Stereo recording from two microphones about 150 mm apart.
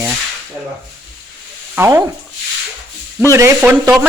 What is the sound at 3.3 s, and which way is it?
Speech, 20° right (ahead or behind).